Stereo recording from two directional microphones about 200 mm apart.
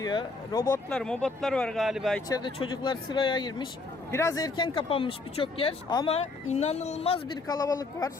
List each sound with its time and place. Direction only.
0.0 s speech: 20° left (ahead or behind); by 2.2 s centre (ahead or behind)
2.3 s speech: 25° left (ahead or behind)
7.4 s speech: 20° left (ahead or behind)